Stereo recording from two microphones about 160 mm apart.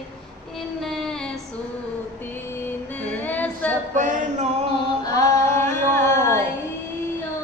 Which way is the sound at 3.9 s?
50° right (ahead or behind).